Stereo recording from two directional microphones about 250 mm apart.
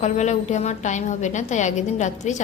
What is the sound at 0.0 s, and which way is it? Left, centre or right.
A woman's voice, left.